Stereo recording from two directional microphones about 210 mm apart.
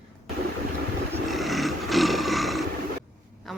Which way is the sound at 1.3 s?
Centre (ahead or behind).